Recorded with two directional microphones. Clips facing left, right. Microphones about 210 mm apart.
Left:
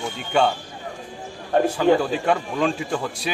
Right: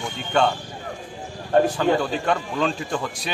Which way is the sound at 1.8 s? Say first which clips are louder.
Left 3 dB; 5° left (ahead or behind).